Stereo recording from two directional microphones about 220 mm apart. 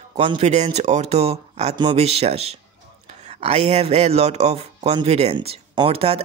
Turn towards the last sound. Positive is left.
turn(degrees=-25)  # may be behind; listen again after turning